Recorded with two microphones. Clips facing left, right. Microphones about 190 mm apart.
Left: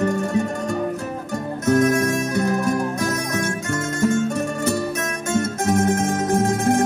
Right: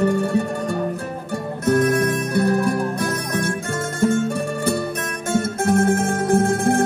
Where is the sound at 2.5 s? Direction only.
30° right (ahead or behind).